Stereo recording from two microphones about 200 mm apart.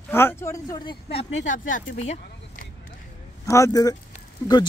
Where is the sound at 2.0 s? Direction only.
35° left (ahead or behind).